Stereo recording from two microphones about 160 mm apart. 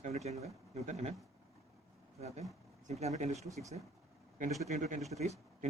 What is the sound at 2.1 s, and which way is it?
Speech, 45° right (ahead or behind).